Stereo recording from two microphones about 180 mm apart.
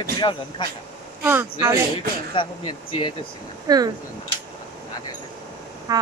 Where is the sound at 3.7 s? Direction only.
20° right (ahead or behind).